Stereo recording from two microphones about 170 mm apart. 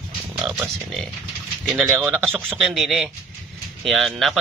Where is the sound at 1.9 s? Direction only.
10° right (ahead or behind).